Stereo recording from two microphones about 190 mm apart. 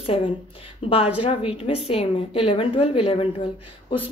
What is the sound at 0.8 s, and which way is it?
Speech, 30° left (ahead or behind).